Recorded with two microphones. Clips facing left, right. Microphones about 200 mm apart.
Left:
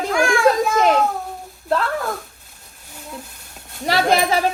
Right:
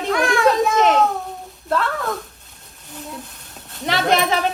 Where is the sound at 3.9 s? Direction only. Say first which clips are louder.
Left 1 dB; 35° left (ahead or behind).